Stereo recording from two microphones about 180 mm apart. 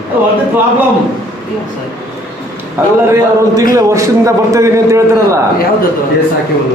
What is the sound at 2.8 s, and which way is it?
A man's voice, 10° right (ahead or behind).